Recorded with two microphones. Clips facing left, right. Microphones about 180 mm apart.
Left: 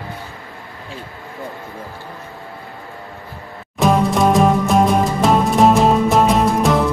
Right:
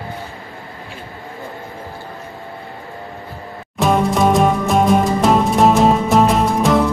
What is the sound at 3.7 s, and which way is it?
Music, centre (ahead or behind).